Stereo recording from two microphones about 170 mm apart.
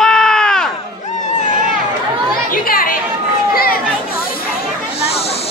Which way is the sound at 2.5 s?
55° left (ahead or behind).